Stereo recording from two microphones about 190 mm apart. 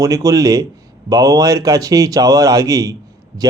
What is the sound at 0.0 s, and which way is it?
Speech, 15° right (ahead or behind).